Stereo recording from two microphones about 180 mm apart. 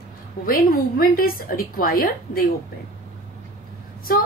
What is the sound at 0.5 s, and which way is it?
A woman's voice, 55° left (ahead or behind).